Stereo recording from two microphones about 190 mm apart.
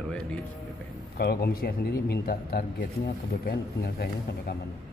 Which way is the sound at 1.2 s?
55° left (ahead or behind).